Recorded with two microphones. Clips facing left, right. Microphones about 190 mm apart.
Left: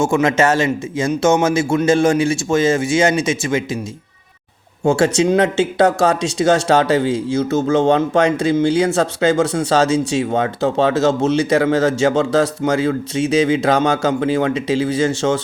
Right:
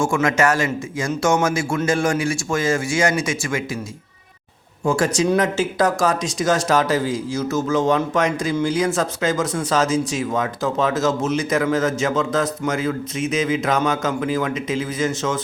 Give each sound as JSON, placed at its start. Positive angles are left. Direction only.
{"t": 0.0, "sound": "speech", "side_deg": 25}
{"t": 4.9, "sound": "speech", "side_deg": 25}